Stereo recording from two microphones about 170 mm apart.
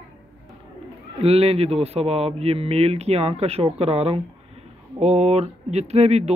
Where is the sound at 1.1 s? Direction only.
35° right (ahead or behind).